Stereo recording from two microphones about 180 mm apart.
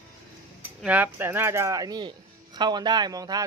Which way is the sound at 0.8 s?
10° right (ahead or behind).